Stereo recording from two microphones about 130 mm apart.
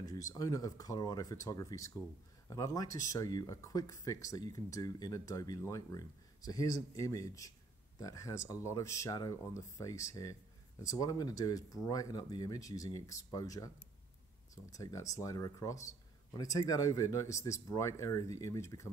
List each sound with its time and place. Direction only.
0.0 s speech: 25° left (ahead or behind)